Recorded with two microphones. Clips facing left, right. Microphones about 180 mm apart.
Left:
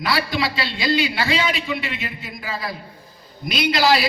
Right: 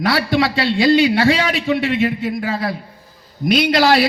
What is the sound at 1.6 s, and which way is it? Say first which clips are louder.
A man's voice: right 11 dB; 60° right (ahead or behind).